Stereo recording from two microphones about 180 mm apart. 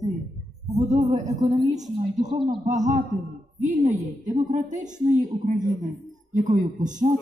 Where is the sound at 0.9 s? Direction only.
40° right (ahead or behind).